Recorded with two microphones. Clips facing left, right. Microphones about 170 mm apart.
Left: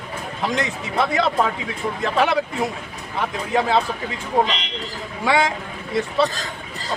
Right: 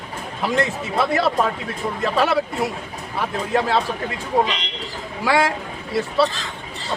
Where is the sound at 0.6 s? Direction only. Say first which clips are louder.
Right 1 dB; 5° right (ahead or behind).